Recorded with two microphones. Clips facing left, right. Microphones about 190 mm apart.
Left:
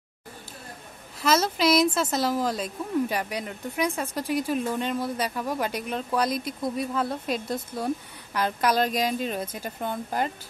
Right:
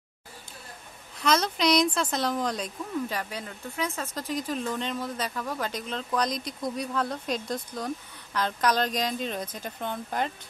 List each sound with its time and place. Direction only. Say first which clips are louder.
1.2 s a woman's voice: left 2 dB; 5° left (ahead or behind)